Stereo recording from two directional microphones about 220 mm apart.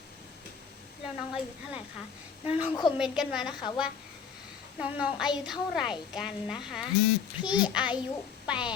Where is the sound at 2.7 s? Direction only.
20° left (ahead or behind).